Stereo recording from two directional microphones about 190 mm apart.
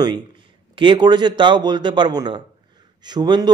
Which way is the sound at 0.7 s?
25° right (ahead or behind).